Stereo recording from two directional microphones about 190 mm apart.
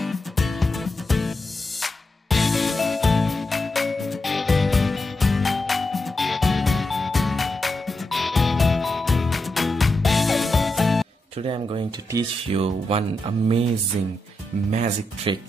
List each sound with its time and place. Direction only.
0.0 s music: centre (ahead or behind)
11.4 s a sound: 30° right (ahead or behind)
12.4 s speech: 30° right (ahead or behind)
14.7 s speech: 35° right (ahead or behind)